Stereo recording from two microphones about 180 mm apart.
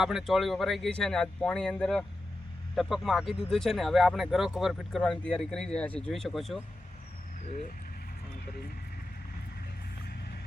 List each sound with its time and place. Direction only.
0.0 s speech: centre (ahead or behind)
7.4 s speech: 40° left (ahead or behind)